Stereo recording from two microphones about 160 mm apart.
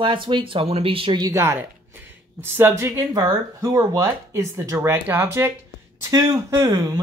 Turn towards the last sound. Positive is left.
turn(degrees=-20)  # may be behind; listen again after turning